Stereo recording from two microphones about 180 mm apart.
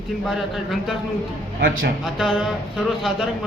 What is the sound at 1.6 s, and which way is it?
Speech, 60° right (ahead or behind).